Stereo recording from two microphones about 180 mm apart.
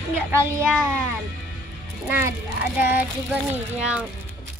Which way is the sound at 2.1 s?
15° right (ahead or behind).